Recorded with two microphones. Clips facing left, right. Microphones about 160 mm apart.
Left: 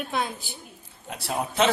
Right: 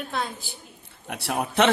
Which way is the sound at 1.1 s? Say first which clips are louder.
Right 1 dB; 65° right (ahead or behind).